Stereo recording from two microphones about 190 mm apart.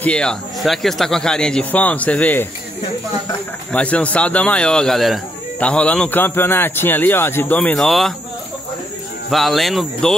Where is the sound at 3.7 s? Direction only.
5° left (ahead or behind).